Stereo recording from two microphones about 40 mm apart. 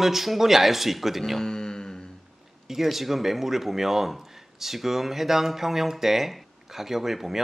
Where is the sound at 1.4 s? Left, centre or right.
Centre.